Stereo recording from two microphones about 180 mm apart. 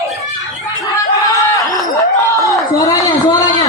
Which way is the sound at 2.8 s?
20° left (ahead or behind).